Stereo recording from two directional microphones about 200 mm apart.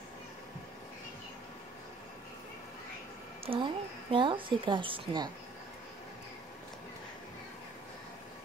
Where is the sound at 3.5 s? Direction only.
30° right (ahead or behind).